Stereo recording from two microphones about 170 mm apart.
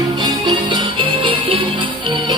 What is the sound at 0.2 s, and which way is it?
Music, 25° right (ahead or behind).